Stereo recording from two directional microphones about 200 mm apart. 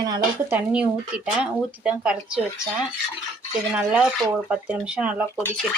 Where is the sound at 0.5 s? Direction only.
5° right (ahead or behind).